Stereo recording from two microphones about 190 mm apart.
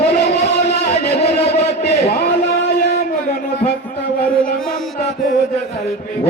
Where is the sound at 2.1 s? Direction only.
55° left (ahead or behind).